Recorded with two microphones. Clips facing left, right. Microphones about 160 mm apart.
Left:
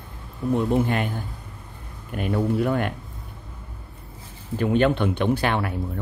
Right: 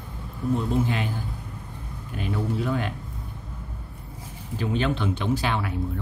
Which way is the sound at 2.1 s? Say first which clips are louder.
Left 5 dB; 55° left (ahead or behind).